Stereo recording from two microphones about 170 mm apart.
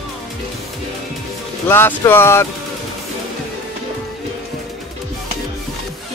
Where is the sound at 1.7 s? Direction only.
15° left (ahead or behind).